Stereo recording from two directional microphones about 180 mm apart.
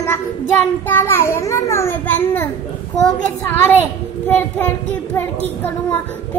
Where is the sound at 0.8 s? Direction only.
10° left (ahead or behind).